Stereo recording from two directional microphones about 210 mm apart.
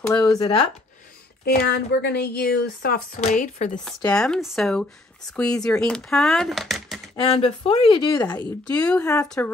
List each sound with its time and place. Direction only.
0.0 s speech: 15° left (ahead or behind)
1.4 s a woman's voice: 50° left (ahead or behind)
3.8 s speech: 5° left (ahead or behind)
7.2 s speech: 25° left (ahead or behind)
8.6 s speech: 5° left (ahead or behind)